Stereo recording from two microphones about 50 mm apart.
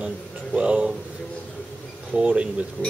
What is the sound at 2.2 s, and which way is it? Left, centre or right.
Speech, right.